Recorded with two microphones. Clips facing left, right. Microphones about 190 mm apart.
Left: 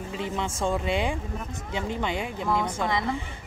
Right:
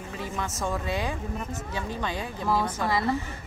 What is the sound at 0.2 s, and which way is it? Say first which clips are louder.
Speech: left 3 dB; 25° left (ahead or behind).